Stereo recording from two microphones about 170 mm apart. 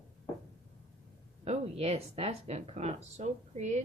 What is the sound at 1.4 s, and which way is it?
Speech, 35° right (ahead or behind).